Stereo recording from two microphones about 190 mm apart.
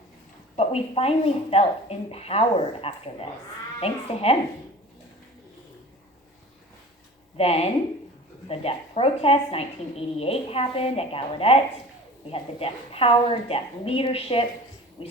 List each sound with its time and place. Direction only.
0.5 s a woman's voice: 30° left (ahead or behind)
7.3 s a woman's voice: 30° left (ahead or behind)